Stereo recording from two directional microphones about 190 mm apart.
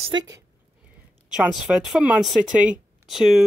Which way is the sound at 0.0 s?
25° right (ahead or behind).